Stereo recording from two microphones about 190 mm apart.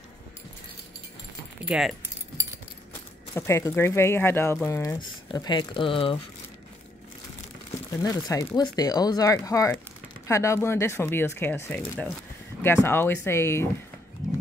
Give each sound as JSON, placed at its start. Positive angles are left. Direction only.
{"t": 1.7, "sound": "speech", "side_deg": -5}
{"t": 3.3, "sound": "speech", "side_deg": 15}
{"t": 8.0, "sound": "speech", "side_deg": 20}